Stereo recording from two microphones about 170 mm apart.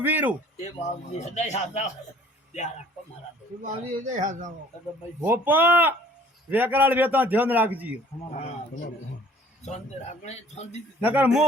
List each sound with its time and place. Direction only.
0.0 s a man's voice: 10° right (ahead or behind)
0.5 s speech: 40° left (ahead or behind)
3.6 s a man's voice: 50° right (ahead or behind)
5.2 s a man's voice: 10° right (ahead or behind)
9.6 s speech: 40° left (ahead or behind)
11.0 s a man's voice: 10° right (ahead or behind)